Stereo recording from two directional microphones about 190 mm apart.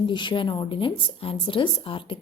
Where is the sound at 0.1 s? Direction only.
25° left (ahead or behind).